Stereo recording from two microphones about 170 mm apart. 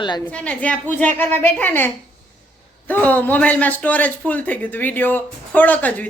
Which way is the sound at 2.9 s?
10° left (ahead or behind).